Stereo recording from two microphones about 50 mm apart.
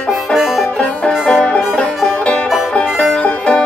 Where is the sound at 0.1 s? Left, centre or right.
Centre.